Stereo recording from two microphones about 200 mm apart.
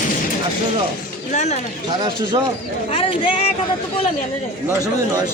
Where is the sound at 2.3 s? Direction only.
25° right (ahead or behind).